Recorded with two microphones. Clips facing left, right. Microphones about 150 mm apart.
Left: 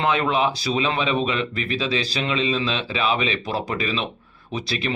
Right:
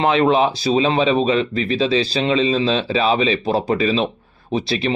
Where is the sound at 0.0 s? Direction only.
25° right (ahead or behind).